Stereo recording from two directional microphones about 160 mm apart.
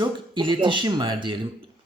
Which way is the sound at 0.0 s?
30° right (ahead or behind).